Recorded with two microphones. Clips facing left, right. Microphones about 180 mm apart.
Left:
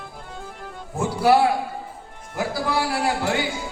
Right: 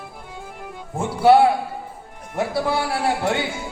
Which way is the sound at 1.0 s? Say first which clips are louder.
Right 3 dB; 25° right (ahead or behind).